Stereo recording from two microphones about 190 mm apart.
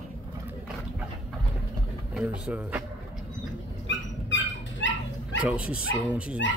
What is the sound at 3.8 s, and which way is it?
Dog, 75° left (ahead or behind).